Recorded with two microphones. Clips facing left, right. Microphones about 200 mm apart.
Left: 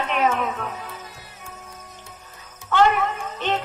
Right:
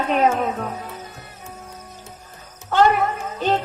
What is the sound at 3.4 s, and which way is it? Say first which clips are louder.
Speech: right 5 dB; 40° right (ahead or behind).